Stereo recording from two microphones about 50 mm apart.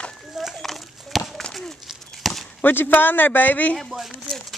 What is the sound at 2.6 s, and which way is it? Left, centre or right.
A man's voice, left.